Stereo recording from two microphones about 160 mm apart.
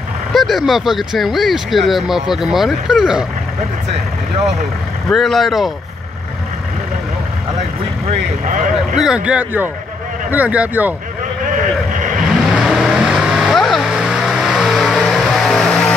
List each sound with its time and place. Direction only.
0.3 s speech: centre (ahead or behind)
5.1 s speech: centre (ahead or behind)
8.9 s speech: 5° right (ahead or behind)
11.5 s vehicle: 55° right (ahead or behind)
12.5 s vehicle: 5° right (ahead or behind)